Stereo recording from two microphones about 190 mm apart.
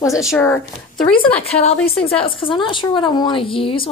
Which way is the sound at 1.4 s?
35° left (ahead or behind).